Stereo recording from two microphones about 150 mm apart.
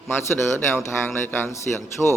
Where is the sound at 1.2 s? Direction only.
15° left (ahead or behind).